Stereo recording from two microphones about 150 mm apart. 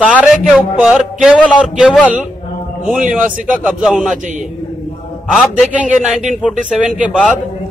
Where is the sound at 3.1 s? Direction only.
60° right (ahead or behind).